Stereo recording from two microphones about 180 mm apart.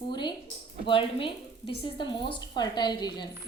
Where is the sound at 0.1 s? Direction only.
25° left (ahead or behind).